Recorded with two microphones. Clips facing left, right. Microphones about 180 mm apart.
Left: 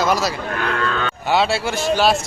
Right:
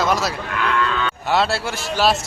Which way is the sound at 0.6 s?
45° left (ahead or behind).